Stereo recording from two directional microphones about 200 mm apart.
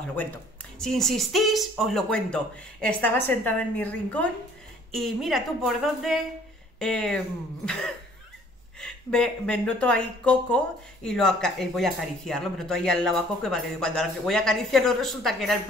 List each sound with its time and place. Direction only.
0.1 s speech: 10° left (ahead or behind)